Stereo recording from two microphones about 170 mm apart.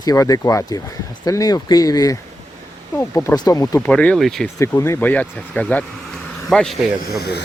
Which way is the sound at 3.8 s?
10° left (ahead or behind).